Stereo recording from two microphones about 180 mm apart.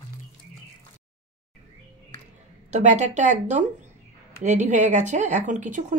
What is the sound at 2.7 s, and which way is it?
A woman's voice, 40° right (ahead or behind).